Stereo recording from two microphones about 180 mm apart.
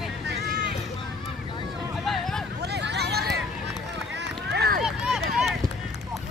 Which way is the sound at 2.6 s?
70° right (ahead or behind).